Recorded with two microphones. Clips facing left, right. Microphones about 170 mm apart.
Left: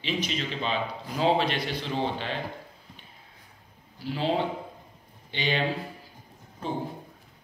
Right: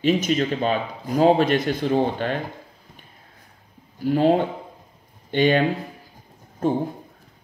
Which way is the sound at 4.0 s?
50° right (ahead or behind).